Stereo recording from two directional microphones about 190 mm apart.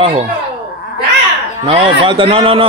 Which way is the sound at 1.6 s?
30° right (ahead or behind).